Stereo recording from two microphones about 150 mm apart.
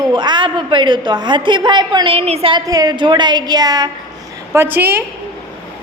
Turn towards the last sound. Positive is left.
turn(degrees=-15)  # may be behind; listen again after turning